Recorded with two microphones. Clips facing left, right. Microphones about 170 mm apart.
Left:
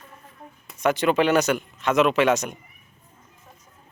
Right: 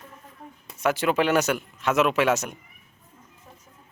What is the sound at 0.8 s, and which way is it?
Speech, 5° right (ahead or behind).